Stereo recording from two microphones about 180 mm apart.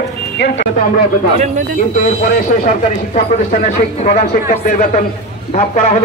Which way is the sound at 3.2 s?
45° left (ahead or behind).